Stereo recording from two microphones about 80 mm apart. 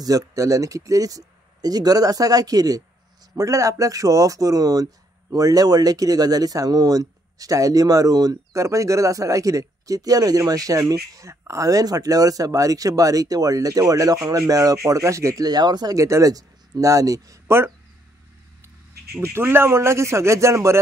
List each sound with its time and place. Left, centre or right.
0.0 s speech: right
3.3 s speech: right
15.4 s speech: right
16.0 s speech: right
19.2 s speech: right